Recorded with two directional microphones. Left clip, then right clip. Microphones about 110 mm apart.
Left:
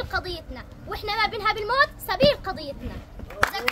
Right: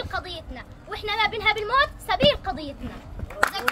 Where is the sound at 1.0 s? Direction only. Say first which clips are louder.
Right 1 dB; 35° left (ahead or behind).